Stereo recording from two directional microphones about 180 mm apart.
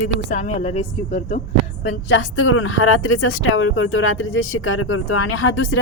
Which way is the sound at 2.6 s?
90° left.